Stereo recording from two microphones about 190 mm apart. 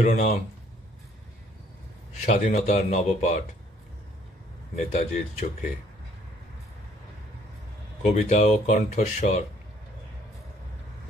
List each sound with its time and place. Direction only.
0.0 s speech: 35° left (ahead or behind)
2.2 s speech: 35° left (ahead or behind)
4.9 s speech: 40° left (ahead or behind)
8.0 s speech: 40° left (ahead or behind)